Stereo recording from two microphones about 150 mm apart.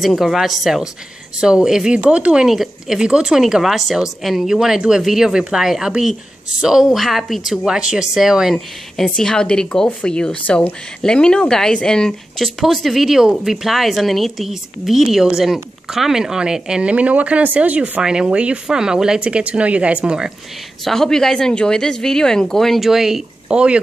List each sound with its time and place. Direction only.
0.0 s speech: centre (ahead or behind)